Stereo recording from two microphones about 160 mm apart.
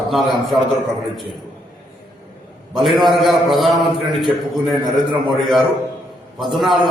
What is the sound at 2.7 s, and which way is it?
A man's voice, centre (ahead or behind).